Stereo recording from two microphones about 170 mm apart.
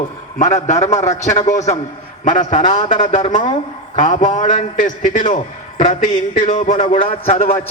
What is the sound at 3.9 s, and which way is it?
A man's voice, 50° left (ahead or behind).